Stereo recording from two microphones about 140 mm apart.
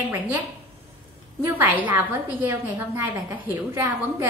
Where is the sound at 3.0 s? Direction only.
20° right (ahead or behind).